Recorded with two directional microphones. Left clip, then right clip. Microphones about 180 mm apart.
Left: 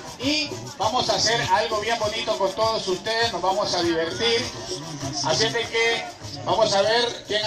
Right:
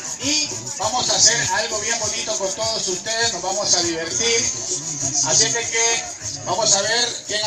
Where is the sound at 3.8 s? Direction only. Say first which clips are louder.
Right 1 dB; 25° right (ahead or behind).